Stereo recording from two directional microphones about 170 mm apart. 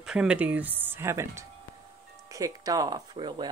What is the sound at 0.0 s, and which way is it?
Speech, 5° right (ahead or behind).